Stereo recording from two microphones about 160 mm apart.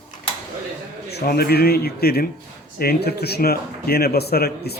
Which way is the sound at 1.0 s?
85° left.